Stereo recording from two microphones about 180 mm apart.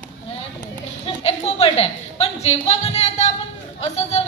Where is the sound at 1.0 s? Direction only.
35° left (ahead or behind).